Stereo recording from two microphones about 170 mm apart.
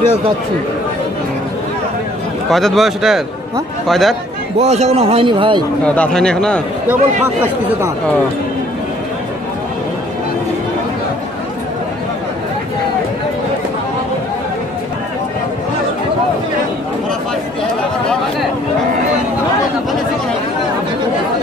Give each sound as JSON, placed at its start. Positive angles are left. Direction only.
{"t": 2.5, "sound": "speech", "side_deg": 0}
{"t": 4.6, "sound": "a man's voice", "side_deg": -40}
{"t": 5.9, "sound": "speech", "side_deg": 5}
{"t": 6.9, "sound": "speech", "side_deg": -10}